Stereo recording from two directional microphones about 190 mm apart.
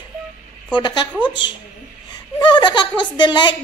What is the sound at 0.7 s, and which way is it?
A woman's voice, 25° left (ahead or behind).